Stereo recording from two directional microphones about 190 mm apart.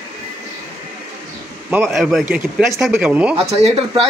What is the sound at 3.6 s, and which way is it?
Speech, 30° right (ahead or behind).